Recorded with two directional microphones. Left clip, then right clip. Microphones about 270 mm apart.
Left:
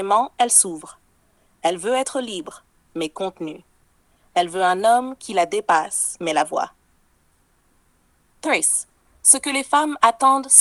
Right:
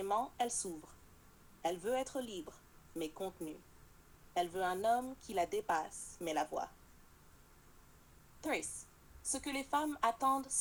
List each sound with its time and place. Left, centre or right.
0.0 s a woman's voice: left
8.4 s a woman's voice: left